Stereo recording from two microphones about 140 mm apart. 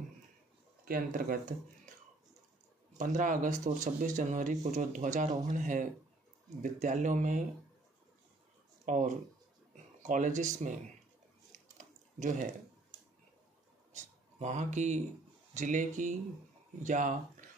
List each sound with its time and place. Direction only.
0.8 s speech: 90° right
3.0 s speech: 70° right (ahead or behind)
8.8 s speech: 65° right (ahead or behind)
11.5 s a sound: 65° right (ahead or behind)
13.9 s speech: 60° right (ahead or behind)